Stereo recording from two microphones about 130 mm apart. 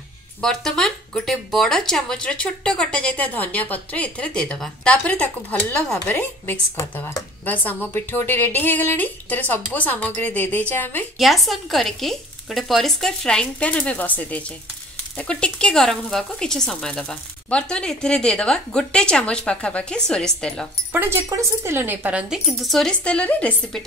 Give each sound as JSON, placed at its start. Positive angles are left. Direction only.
{"t": 0.4, "sound": "speech", "side_deg": 5}
{"t": 11.1, "sound": "speech", "side_deg": 0}
{"t": 20.9, "sound": "speech", "side_deg": -20}